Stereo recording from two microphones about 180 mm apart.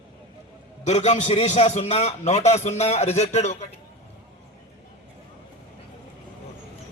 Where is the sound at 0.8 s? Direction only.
40° left (ahead or behind).